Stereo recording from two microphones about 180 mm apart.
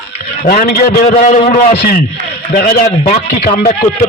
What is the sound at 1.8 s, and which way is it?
A man's voice, 55° left (ahead or behind).